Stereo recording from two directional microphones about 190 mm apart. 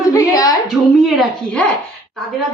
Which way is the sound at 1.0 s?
5° left (ahead or behind).